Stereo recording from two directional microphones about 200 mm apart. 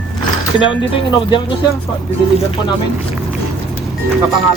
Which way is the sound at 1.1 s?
25° left (ahead or behind).